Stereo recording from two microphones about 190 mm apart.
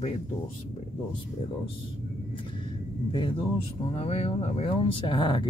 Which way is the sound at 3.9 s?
30° left (ahead or behind).